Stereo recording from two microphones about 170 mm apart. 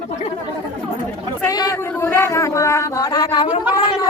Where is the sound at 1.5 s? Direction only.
20° left (ahead or behind).